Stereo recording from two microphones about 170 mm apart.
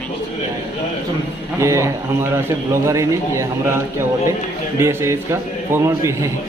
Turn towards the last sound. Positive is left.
turn(degrees=-15)  # may be behind; listen again after turning